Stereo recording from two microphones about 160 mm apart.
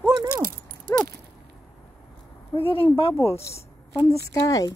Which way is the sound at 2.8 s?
35° left (ahead or behind).